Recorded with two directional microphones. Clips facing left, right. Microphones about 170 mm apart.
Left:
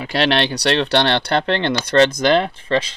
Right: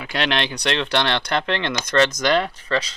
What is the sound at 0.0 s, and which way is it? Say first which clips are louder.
Speech: left 5 dB; 35° left (ahead or behind).